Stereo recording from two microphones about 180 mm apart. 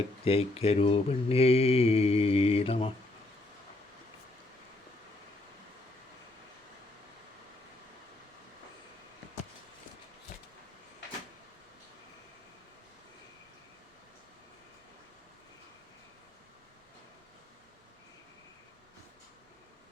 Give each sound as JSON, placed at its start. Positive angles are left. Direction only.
{"t": 0.3, "sound": "mantra", "side_deg": 35}